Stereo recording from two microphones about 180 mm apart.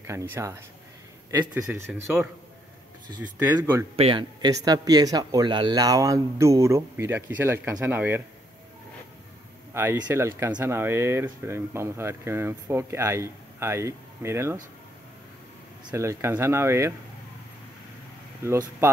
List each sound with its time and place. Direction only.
0.0 s speech: 15° right (ahead or behind)
3.9 s speech: 30° right (ahead or behind); by 8.2 s 10° right (ahead or behind)
9.8 s speech: 20° right (ahead or behind)
15.9 s speech: 15° right (ahead or behind)
18.4 s speech: 15° right (ahead or behind)